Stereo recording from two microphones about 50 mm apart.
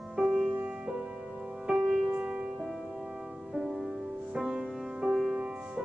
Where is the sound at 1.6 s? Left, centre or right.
Right.